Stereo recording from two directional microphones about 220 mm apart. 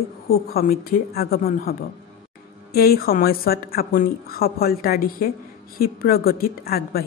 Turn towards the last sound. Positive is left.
turn(degrees=45)  # may be behind; listen again after turning